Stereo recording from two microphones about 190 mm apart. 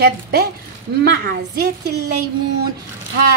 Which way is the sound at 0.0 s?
55° right (ahead or behind).